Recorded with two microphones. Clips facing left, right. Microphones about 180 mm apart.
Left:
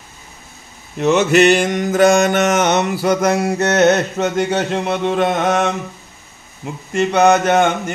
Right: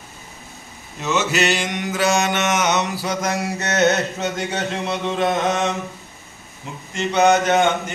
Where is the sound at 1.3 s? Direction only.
55° left (ahead or behind).